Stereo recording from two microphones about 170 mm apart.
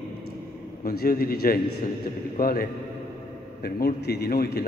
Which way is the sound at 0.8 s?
60° left (ahead or behind).